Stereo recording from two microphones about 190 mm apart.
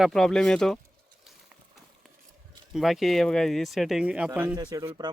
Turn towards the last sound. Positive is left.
turn(degrees=-20)  # may be behind; listen again after turning